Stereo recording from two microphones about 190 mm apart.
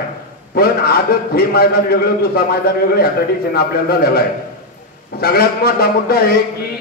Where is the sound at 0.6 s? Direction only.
55° left (ahead or behind).